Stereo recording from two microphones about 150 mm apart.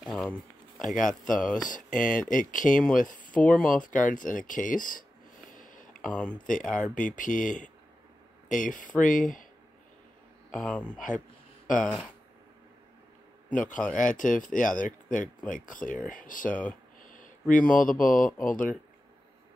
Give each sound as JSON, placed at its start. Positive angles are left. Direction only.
{"t": 0.0, "sound": "a sound", "side_deg": 5}
{"t": 0.8, "sound": "speech", "side_deg": 60}
{"t": 1.2, "sound": "speech", "side_deg": 5}
{"t": 1.9, "sound": "speech", "side_deg": 60}
{"t": 3.3, "sound": "speech", "side_deg": 10}
{"t": 3.6, "sound": "speech", "side_deg": 60}
{"t": 5.5, "sound": "a sound", "side_deg": 60}
{"t": 6.4, "sound": "speech", "side_deg": 60}
{"t": 10.5, "sound": "speech", "side_deg": 5}
{"t": 11.0, "sound": "speech", "side_deg": 60}
{"t": 13.6, "sound": "speech", "side_deg": 60}